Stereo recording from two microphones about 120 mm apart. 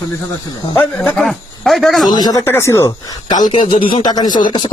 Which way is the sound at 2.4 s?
20° left (ahead or behind).